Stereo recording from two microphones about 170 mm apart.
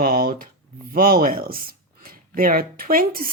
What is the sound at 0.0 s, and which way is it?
Speech, 60° right (ahead or behind).